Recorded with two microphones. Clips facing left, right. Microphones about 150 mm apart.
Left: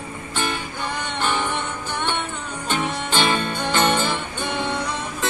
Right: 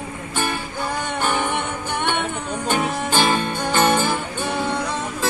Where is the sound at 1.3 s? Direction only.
15° right (ahead or behind).